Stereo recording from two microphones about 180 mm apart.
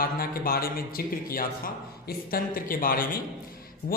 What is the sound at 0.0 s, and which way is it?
A man's voice, 55° left (ahead or behind).